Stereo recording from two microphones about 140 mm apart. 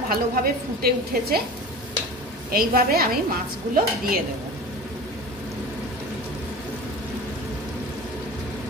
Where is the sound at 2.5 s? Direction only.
90° right.